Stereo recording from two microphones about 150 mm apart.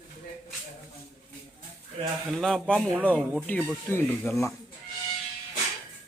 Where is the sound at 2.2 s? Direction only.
Centre (ahead or behind).